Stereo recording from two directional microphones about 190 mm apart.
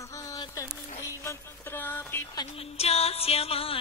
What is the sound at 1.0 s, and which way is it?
Music, 15° left (ahead or behind).